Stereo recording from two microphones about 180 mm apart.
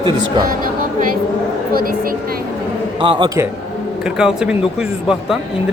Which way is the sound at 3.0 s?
30° right (ahead or behind).